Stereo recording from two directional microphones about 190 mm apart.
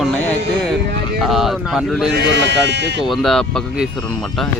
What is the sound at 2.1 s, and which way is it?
Speech, 65° right (ahead or behind).